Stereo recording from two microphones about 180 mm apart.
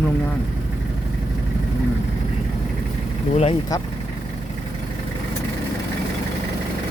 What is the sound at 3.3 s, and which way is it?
Speech, 35° left (ahead or behind).